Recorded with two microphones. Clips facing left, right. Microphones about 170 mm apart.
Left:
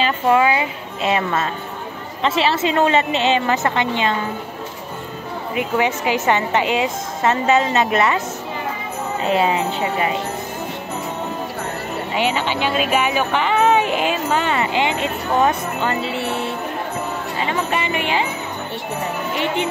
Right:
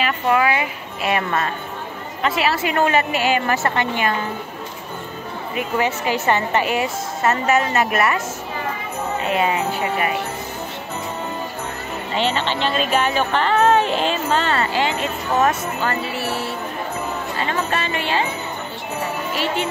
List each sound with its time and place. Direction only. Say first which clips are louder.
0.0 s a woman's voice: left 2 dB; 25° left (ahead or behind)
5.5 s a woman's voice: left 2 dB; 15° left (ahead or behind)
9.2 s a woman's voice: left 3 dB; 30° left (ahead or behind)
12.1 s a woman's voice: even; 10° left (ahead or behind)
19.3 s a woman's voice: left 2 dB; 20° left (ahead or behind)